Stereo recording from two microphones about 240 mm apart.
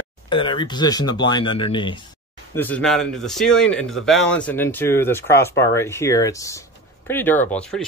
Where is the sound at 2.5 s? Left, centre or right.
Centre.